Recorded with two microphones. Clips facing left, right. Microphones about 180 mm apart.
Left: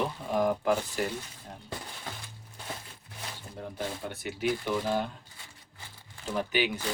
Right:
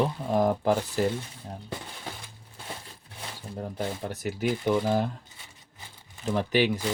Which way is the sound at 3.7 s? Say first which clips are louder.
Right 3 dB; 40° right (ahead or behind).